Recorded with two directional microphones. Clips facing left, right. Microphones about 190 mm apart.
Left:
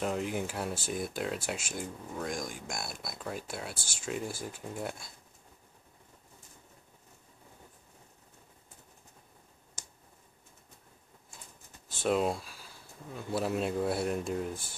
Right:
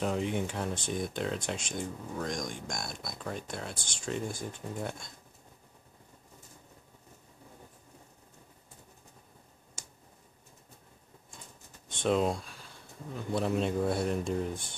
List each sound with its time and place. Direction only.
0.0 s speech: centre (ahead or behind)
11.9 s speech: 5° left (ahead or behind)